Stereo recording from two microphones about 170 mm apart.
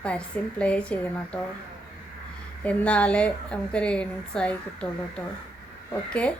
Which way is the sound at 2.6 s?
5° left (ahead or behind).